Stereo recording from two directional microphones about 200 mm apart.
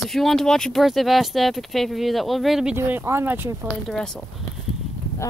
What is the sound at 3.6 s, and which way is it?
Speech, 5° left (ahead or behind).